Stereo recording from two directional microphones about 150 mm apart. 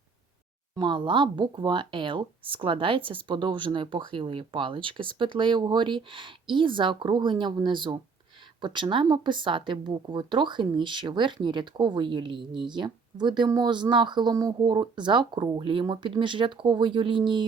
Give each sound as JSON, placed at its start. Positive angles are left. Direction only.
{"t": 0.8, "sound": "speech", "side_deg": -30}